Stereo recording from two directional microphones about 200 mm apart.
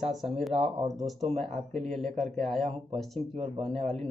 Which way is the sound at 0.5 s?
30° right (ahead or behind).